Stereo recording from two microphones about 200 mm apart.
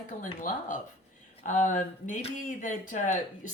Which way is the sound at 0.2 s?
40° left (ahead or behind).